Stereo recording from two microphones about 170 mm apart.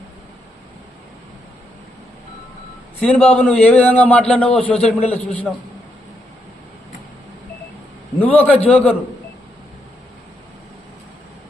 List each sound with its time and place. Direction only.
3.0 s a man's voice: 5° left (ahead or behind)
8.2 s a man's voice: 10° left (ahead or behind)